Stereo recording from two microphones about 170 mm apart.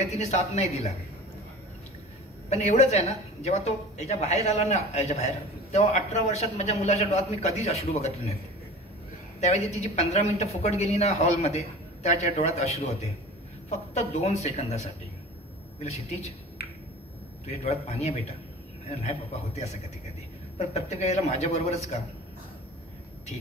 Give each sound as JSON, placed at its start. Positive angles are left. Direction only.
{"t": 0.0, "sound": "a woman's voice", "side_deg": 40}
{"t": 2.5, "sound": "a woman's voice", "side_deg": 40}
{"t": 9.4, "sound": "a woman's voice", "side_deg": 40}
{"t": 17.5, "sound": "a woman's voice", "side_deg": 40}